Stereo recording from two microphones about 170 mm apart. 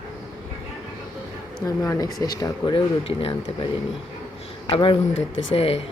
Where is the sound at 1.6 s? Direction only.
20° left (ahead or behind).